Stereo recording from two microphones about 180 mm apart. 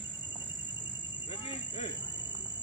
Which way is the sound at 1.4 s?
30° left (ahead or behind).